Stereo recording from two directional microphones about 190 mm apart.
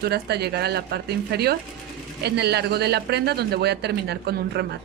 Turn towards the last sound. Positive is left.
turn(degrees=-60)  # may be behind; listen again after turning